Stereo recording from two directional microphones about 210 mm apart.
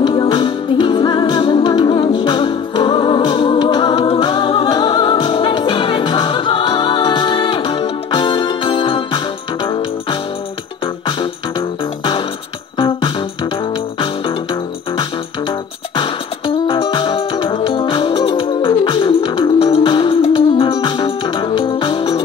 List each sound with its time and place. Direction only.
0.0 s music: 25° left (ahead or behind)
12.7 s music: 25° left (ahead or behind)